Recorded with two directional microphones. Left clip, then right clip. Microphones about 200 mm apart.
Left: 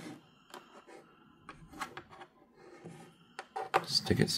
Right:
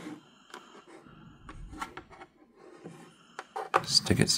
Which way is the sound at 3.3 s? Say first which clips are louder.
Right 3 dB; 10° right (ahead or behind).